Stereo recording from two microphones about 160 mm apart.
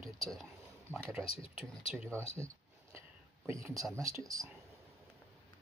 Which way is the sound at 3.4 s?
20° right (ahead or behind).